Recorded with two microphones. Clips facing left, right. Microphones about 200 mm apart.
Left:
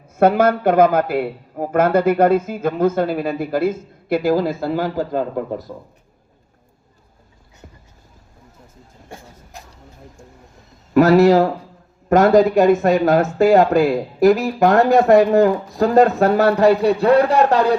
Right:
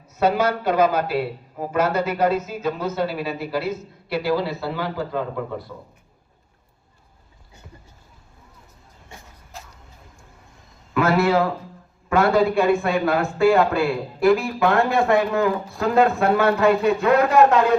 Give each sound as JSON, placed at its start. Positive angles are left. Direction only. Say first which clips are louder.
{"t": 0.2, "sound": "a woman's voice", "louder": "left 6 dB", "side_deg": 55}
{"t": 9.5, "sound": "a sound", "louder": "even", "side_deg": 15}
{"t": 10.9, "sound": "speech", "louder": "left 7 dB", "side_deg": 40}